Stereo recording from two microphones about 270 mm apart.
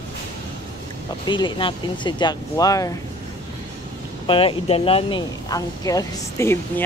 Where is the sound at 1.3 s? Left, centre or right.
Centre.